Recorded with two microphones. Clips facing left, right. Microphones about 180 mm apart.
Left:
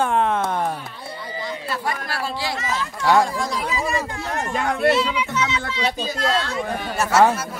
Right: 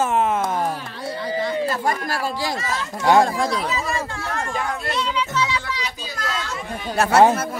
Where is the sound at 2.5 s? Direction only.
20° right (ahead or behind).